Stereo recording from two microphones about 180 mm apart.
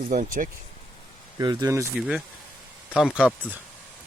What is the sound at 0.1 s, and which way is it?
Speech, 50° right (ahead or behind).